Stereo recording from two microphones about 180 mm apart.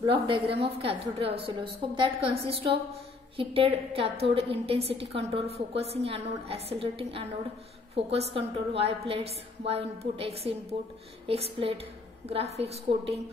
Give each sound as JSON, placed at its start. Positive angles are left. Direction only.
{"t": 0.0, "sound": "a woman's voice", "side_deg": -30}